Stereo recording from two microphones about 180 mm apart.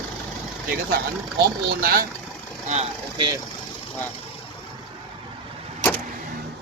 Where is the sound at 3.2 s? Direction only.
25° right (ahead or behind).